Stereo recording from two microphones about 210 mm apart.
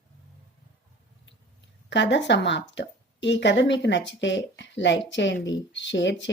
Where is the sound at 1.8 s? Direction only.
55° left (ahead or behind).